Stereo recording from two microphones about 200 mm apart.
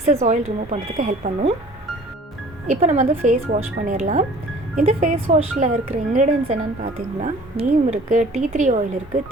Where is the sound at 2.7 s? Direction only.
35° right (ahead or behind).